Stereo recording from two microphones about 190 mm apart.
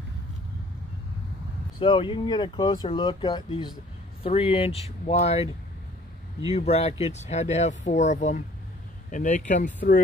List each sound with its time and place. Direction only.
1.8 s speech: 25° left (ahead or behind)
6.5 s speech: 35° left (ahead or behind)